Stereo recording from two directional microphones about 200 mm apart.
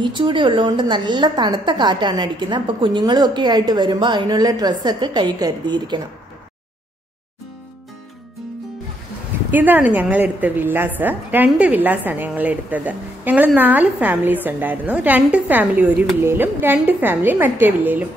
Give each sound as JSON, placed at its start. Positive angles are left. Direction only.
{"t": 0.0, "sound": "a woman's voice", "side_deg": -25}
{"t": 9.5, "sound": "a woman's voice", "side_deg": -10}